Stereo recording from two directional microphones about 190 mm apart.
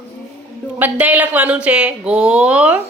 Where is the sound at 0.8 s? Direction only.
10° right (ahead or behind).